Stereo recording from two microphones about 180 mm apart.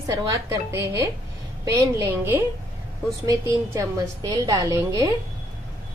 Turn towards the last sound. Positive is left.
turn(degrees=-15)  # may be behind; listen again after turning